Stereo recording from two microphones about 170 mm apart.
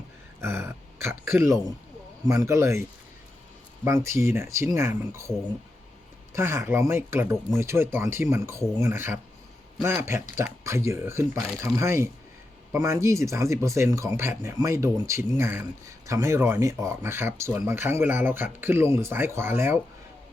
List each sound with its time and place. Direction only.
0.4 s speech: 15° right (ahead or behind)
3.8 s speech: 15° right (ahead or behind)
6.3 s speech: 15° right (ahead or behind)